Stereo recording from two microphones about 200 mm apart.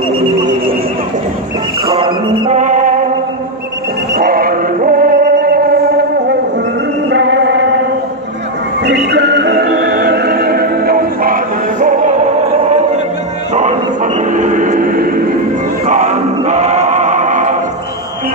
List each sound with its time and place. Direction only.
1.9 s music: 25° right (ahead or behind)
2.5 s music: 40° right (ahead or behind)
4.1 s music: 50° right (ahead or behind)
7.1 s music: 60° right (ahead or behind)
8.8 s music: 55° right (ahead or behind); by 12.2 s 40° right (ahead or behind)
13.6 s music: 35° right (ahead or behind)
15.9 s choir: 35° right (ahead or behind)